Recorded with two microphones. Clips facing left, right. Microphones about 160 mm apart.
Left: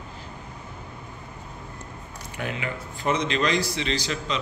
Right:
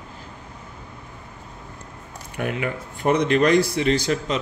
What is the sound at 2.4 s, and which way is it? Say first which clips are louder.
A man's voice: right 5 dB; 55° right (ahead or behind).